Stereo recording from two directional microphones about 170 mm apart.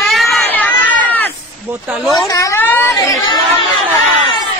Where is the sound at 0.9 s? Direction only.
10° left (ahead or behind).